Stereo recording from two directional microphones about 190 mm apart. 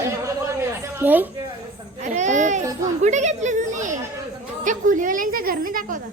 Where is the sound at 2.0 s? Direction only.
40° right (ahead or behind).